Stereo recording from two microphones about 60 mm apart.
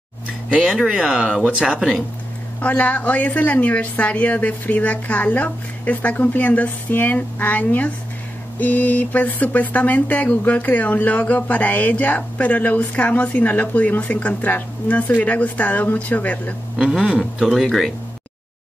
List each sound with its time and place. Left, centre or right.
0.7 s speech: centre
2.6 s a woman's voice: left
16.7 s speech: centre
17.6 s speech: centre